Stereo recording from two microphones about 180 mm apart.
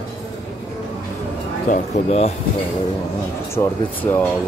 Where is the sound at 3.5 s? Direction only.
15° left (ahead or behind).